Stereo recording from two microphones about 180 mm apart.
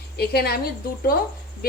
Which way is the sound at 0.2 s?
60° left (ahead or behind).